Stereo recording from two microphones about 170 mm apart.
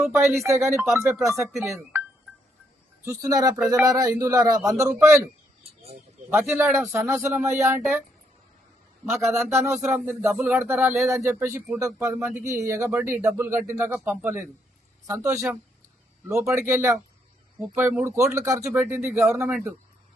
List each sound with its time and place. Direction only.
0.0 s speech: 15° right (ahead or behind)
3.0 s speech: 20° right (ahead or behind)
6.5 s speech: 15° right (ahead or behind)
9.3 s speech: 15° right (ahead or behind)